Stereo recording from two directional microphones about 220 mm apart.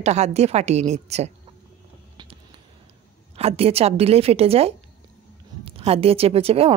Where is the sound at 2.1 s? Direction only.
25° right (ahead or behind).